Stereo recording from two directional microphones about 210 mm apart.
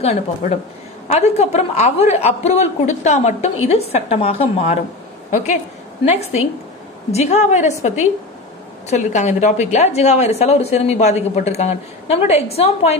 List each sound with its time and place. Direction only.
0.0 s a woman's voice: 30° left (ahead or behind)
7.1 s a woman's voice: 30° left (ahead or behind)